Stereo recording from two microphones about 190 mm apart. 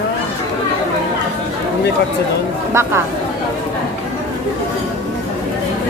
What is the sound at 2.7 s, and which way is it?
Speech, 15° right (ahead or behind).